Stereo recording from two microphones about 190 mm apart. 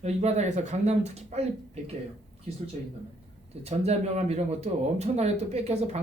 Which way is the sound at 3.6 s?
35° right (ahead or behind).